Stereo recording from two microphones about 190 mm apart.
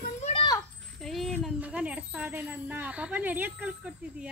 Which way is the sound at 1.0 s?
Centre (ahead or behind).